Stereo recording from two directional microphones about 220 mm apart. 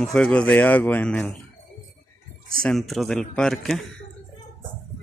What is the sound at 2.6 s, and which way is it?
A man's voice, centre (ahead or behind).